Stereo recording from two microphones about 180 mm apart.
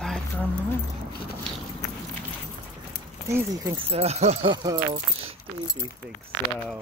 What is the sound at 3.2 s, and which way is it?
Speech, 15° right (ahead or behind).